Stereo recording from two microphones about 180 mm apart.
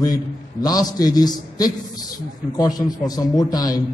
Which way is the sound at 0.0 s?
20° left (ahead or behind).